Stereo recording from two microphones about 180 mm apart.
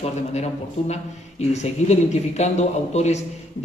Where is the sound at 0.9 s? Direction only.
35° left (ahead or behind).